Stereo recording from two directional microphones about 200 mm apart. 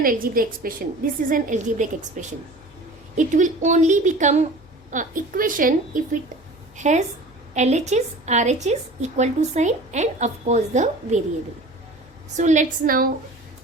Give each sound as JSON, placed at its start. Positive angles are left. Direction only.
{"t": 0.0, "sound": "a woman's voice", "side_deg": -45}
{"t": 12.4, "sound": "a woman's voice", "side_deg": -35}